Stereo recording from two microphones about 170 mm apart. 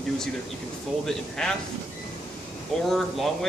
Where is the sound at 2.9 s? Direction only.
Centre (ahead or behind).